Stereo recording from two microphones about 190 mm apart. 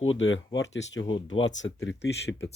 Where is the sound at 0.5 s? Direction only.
70° left (ahead or behind).